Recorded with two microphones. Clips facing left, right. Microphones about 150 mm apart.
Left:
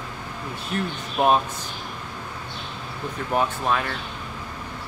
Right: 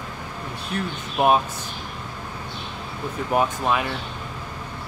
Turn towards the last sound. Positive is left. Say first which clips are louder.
# right 1 dB
turn(degrees=-10)  # may be behind; listen again after turning